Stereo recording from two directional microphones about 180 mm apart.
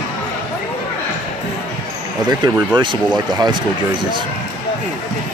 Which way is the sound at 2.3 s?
25° right (ahead or behind).